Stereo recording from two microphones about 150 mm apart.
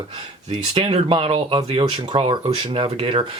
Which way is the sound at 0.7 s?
40° right (ahead or behind).